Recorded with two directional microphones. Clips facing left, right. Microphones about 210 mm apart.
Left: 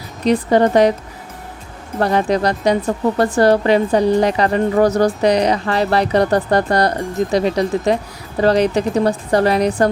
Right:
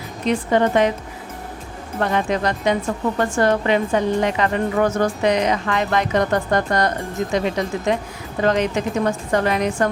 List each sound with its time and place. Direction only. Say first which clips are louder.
0.3 s a woman's voice: left 4 dB; 35° left (ahead or behind)
2.0 s a woman's voice: left 4 dB; 35° left (ahead or behind)